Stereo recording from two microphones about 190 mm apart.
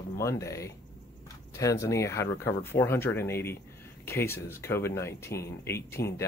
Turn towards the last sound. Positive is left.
turn(degrees=15)  # may be behind; listen again after turning